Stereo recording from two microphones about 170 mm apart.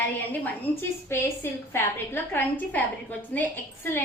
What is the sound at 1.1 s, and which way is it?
A woman's voice, 15° left (ahead or behind).